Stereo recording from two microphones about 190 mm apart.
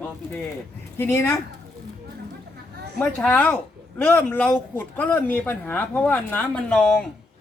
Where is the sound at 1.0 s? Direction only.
15° left (ahead or behind).